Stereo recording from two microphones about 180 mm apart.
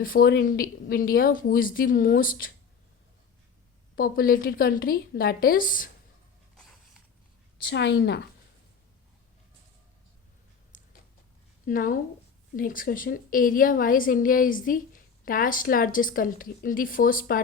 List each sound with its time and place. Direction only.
0.0 s a woman's voice: 55° left (ahead or behind)
3.9 s a woman's voice: 55° left (ahead or behind)
7.7 s a woman's voice: 75° left (ahead or behind)
10.7 s a sound: 45° left (ahead or behind)
11.6 s a woman's voice: 50° left (ahead or behind)